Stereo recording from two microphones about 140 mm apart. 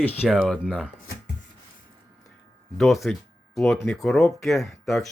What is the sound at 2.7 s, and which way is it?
Speech, centre (ahead or behind).